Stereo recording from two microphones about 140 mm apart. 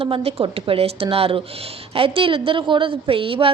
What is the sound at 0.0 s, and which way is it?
A woman's voice, 45° right (ahead or behind).